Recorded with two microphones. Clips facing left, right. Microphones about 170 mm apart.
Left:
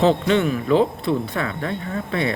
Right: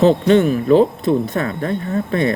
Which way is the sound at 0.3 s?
40° right (ahead or behind).